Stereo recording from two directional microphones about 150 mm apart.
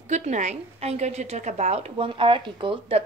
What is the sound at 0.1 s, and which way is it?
A woman's voice, 50° right (ahead or behind).